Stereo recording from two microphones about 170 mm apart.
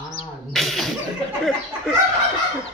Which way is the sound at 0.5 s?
Centre (ahead or behind).